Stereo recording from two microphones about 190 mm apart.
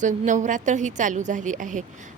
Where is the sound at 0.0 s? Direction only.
40° right (ahead or behind).